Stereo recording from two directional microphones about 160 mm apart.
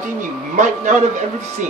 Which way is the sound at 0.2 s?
50° right (ahead or behind).